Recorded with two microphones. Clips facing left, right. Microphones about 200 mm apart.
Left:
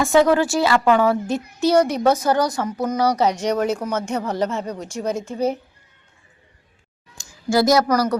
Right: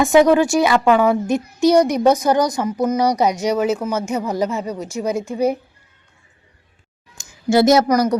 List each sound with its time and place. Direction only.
0.0 s speech: 15° right (ahead or behind)
7.2 s speech: 20° right (ahead or behind)